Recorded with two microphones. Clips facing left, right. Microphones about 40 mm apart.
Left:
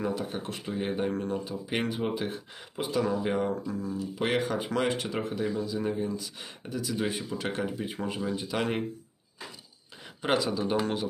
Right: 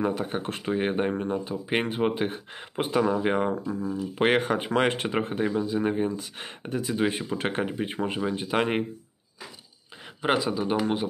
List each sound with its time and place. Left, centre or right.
0.0 s speech: right
1.1 s speech: right
10.2 s speech: right